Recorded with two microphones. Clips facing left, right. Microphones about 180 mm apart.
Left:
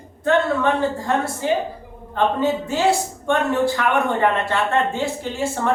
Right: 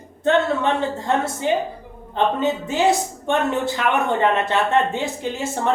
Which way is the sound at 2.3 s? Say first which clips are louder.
Even; 20° right (ahead or behind).